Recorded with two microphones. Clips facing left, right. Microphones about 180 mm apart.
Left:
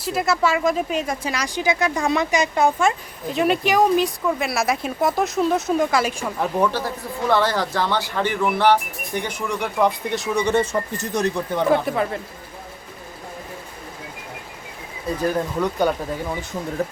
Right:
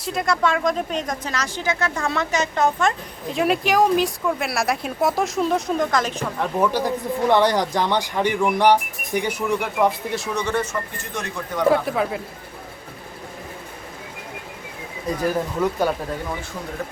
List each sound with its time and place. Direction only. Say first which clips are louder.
0.0 s speech: left 1 dB; 5° left (ahead or behind)
6.6 s speech: right 3 dB; 15° right (ahead or behind)
10.3 s speech: left 5 dB; 20° left (ahead or behind)
10.6 s speech: left 4 dB; 35° left (ahead or behind)
11.7 s speech: left 2 dB; centre (ahead or behind)
15.3 s speech: right 1 dB; 5° right (ahead or behind)